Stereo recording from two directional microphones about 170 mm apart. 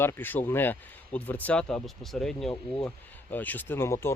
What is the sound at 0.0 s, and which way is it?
Speech, 15° left (ahead or behind).